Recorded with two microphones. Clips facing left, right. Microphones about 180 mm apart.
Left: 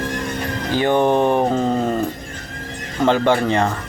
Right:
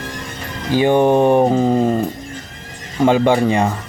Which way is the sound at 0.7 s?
15° right (ahead or behind).